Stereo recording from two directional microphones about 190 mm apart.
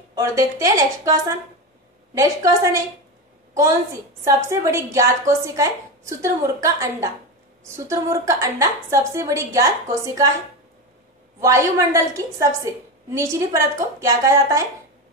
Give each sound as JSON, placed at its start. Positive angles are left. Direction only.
{"t": 0.1, "sound": "a woman's voice", "side_deg": -15}
{"t": 4.2, "sound": "a woman's voice", "side_deg": -15}
{"t": 11.4, "sound": "a woman's voice", "side_deg": -15}